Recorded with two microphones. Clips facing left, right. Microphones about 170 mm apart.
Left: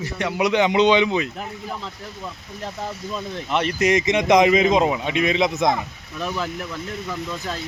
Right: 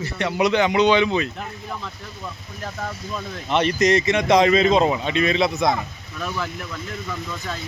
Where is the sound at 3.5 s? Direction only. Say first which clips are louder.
Right 2 dB; 5° left (ahead or behind).